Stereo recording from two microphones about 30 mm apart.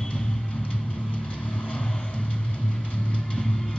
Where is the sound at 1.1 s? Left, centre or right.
Left.